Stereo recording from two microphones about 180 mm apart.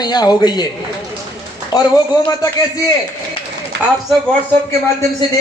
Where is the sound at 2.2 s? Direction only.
20° left (ahead or behind).